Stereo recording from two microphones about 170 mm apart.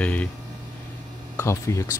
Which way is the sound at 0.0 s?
10° left (ahead or behind).